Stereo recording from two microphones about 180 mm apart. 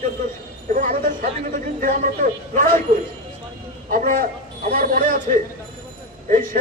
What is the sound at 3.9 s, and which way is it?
A man's voice, 55° right (ahead or behind).